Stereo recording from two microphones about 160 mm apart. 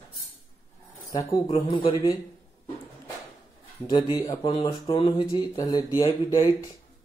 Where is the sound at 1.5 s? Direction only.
30° left (ahead or behind).